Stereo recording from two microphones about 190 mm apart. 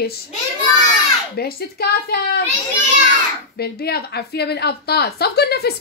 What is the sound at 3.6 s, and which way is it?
A woman's voice, 55° left (ahead or behind).